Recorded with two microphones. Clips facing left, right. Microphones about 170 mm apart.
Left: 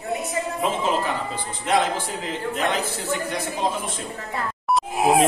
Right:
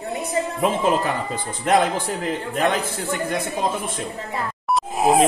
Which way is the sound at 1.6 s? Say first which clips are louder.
Right 3 dB; 50° right (ahead or behind).